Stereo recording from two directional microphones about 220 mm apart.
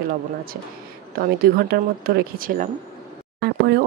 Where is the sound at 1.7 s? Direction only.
40° right (ahead or behind).